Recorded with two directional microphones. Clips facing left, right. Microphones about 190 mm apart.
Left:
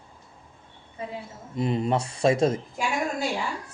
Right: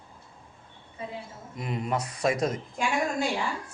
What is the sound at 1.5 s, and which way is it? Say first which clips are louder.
A man's voice: left 6 dB; 30° left (ahead or behind).